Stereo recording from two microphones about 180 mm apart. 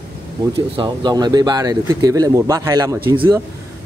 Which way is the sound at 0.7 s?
20° right (ahead or behind).